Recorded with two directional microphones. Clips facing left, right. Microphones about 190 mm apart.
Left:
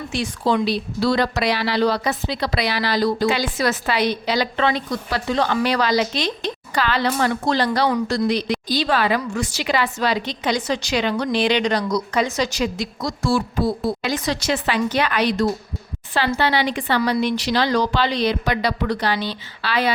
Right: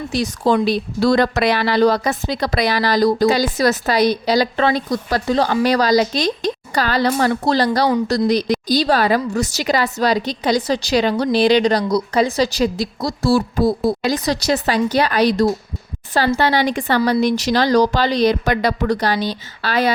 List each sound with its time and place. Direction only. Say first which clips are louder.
0.1 s a woman's voice: right 4 dB; 40° right (ahead or behind)